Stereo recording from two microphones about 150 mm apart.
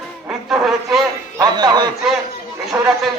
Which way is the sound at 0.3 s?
5° right (ahead or behind).